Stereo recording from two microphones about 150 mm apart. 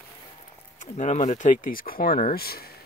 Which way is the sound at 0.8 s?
55° left (ahead or behind).